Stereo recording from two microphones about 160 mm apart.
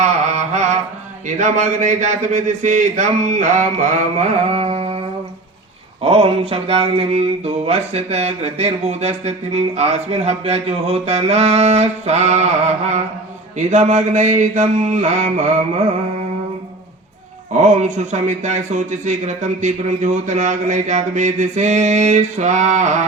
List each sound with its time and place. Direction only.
0.0 s mantra: 45° right (ahead or behind)
1.4 s speech: 50° right (ahead or behind)
6.0 s a sound: 35° right (ahead or behind)
13.6 s speech: 50° right (ahead or behind)
17.6 s speech: 50° right (ahead or behind)